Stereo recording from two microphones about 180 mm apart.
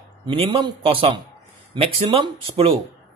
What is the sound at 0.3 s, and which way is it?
A man's voice, 30° right (ahead or behind).